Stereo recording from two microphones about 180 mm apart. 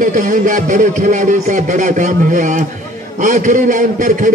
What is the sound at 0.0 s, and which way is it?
A man's voice, 45° right (ahead or behind).